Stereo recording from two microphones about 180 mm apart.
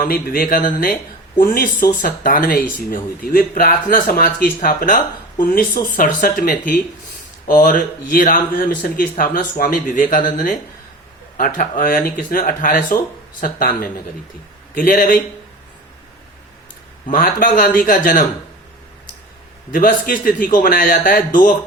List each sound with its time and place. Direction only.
0.0 s speech: 50° left (ahead or behind)
14.8 s speech: 50° left (ahead or behind)
17.1 s speech: 50° left (ahead or behind)
19.7 s speech: 50° left (ahead or behind)